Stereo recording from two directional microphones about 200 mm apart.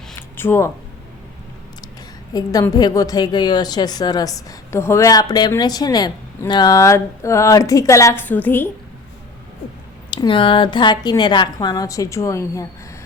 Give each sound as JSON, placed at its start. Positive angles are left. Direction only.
{"t": 0.1, "sound": "a sound", "side_deg": 10}
{"t": 2.3, "sound": "a woman's voice", "side_deg": 20}
{"t": 10.2, "sound": "a woman's voice", "side_deg": 25}